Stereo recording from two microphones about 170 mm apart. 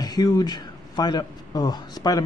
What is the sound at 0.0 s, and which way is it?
Speech, 25° left (ahead or behind).